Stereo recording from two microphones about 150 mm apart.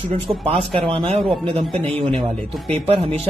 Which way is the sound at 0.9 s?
45° right (ahead or behind).